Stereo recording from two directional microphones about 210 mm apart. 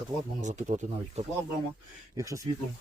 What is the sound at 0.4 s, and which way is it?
Speech, 35° right (ahead or behind).